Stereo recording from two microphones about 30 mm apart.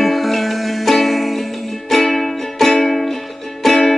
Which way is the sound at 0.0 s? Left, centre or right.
Centre.